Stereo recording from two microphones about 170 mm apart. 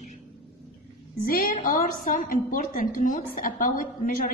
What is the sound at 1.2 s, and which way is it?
A woman's voice, 60° left (ahead or behind).